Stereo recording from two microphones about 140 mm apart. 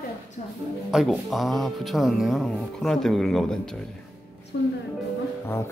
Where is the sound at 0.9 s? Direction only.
5° right (ahead or behind).